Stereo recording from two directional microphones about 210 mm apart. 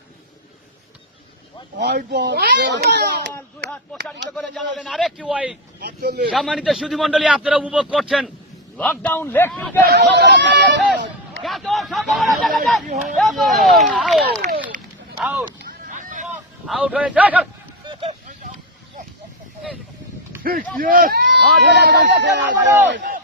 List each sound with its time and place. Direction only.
1.8 s speech: 50° right (ahead or behind)
4.4 s a man's voice: 5° left (ahead or behind)
5.8 s speech: 50° right (ahead or behind)
6.3 s a man's voice: centre (ahead or behind)
9.8 s speech: 55° right (ahead or behind)
11.4 s a man's voice: centre (ahead or behind)
15.9 s vehicle: 35° right (ahead or behind)
16.6 s a man's voice: 5° right (ahead or behind)
17.8 s a sound: 20° right (ahead or behind)
20.8 s speech: 45° right (ahead or behind)
22.9 s a sound: 45° right (ahead or behind)